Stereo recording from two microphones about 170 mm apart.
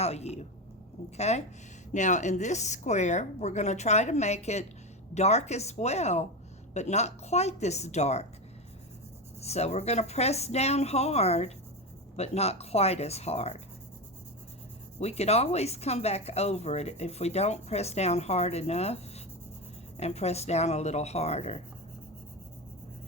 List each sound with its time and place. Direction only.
0.0 s a woman's voice: 40° left (ahead or behind)
9.4 s speech: 40° left (ahead or behind)
14.9 s speech: 40° left (ahead or behind)